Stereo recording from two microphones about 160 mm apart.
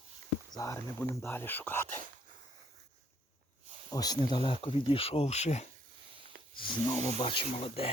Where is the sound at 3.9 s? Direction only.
25° left (ahead or behind); by 5.7 s 45° left (ahead or behind).